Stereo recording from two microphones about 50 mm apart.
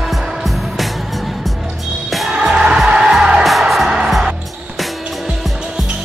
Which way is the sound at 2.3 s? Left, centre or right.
Centre.